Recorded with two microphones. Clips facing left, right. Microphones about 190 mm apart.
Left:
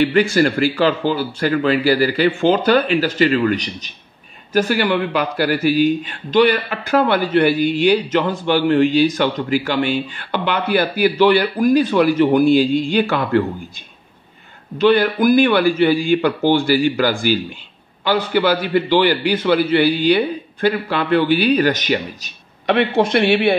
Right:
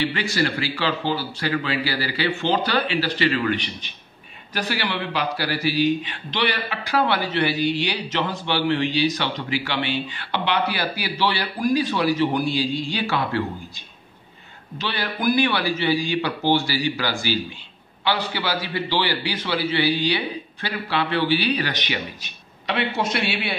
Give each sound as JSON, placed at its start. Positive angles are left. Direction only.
{"t": 0.0, "sound": "a man's voice", "side_deg": 50}